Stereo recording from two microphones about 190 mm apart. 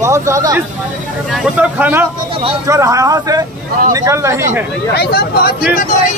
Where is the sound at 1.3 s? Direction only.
5° right (ahead or behind).